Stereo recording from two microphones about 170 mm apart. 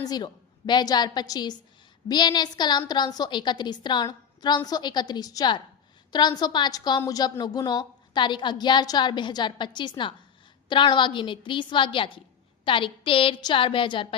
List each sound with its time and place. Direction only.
0.0 s a woman's voice: 25° left (ahead or behind)